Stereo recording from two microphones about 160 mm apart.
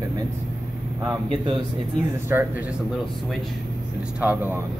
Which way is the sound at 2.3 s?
15° right (ahead or behind).